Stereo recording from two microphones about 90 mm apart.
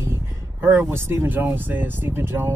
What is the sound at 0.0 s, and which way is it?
Speech, 30° right (ahead or behind).